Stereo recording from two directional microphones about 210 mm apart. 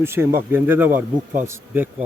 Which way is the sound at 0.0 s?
10° right (ahead or behind).